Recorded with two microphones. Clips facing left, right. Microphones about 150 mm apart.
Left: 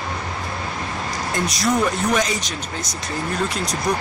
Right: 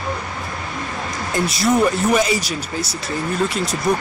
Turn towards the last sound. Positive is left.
turn(degrees=0)  # may be behind; listen again after turning